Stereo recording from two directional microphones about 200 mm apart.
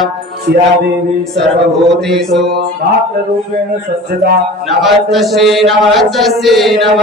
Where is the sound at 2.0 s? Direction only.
Centre (ahead or behind).